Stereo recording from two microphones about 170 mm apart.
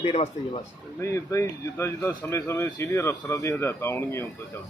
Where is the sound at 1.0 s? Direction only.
15° left (ahead or behind).